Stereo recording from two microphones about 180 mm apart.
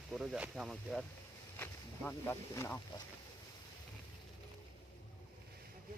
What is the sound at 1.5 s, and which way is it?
Speech, 10° left (ahead or behind).